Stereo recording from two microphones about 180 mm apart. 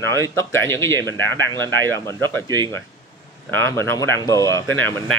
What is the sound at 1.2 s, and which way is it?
Speech, 90° right.